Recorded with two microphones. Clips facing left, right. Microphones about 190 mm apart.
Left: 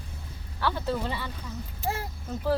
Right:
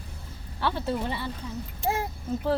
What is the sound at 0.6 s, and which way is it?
Speech, 25° right (ahead or behind).